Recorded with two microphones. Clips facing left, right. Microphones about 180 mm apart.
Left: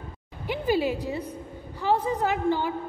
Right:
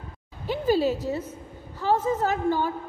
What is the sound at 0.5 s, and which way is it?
A woman's voice, 15° left (ahead or behind).